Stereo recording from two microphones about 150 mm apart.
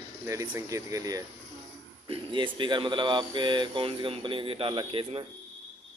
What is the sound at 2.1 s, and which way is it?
Speech, 35° right (ahead or behind).